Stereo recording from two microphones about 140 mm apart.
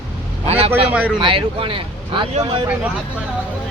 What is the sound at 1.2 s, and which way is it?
Speech, 40° right (ahead or behind).